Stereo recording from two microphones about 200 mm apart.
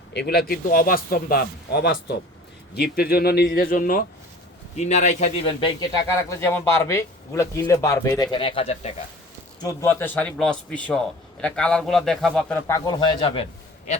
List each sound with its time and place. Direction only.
0.1 s a man's voice: 55° left (ahead or behind); by 5.7 s 30° left (ahead or behind)
6.1 s speech: 15° left (ahead or behind); by 8.9 s 30° left (ahead or behind)
9.6 s a man's voice: 15° left (ahead or behind)